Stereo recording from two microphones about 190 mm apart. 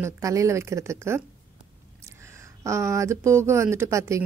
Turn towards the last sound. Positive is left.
turn(degrees=-15)  # may be behind; listen again after turning